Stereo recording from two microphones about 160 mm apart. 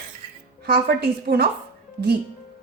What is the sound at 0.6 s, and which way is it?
Speech, 85° right.